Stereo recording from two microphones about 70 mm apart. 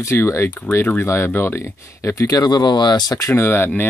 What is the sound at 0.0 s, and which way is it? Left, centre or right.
Speech, left.